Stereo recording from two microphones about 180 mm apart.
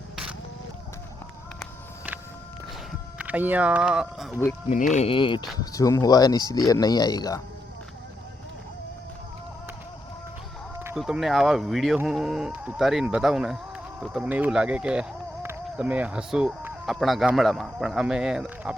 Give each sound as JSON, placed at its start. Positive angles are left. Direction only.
{"t": 3.2, "sound": "speech", "side_deg": -10}
{"t": 4.7, "sound": "speech", "side_deg": 40}
{"t": 5.0, "sound": "speech", "side_deg": 30}
{"t": 10.9, "sound": "speech", "side_deg": 0}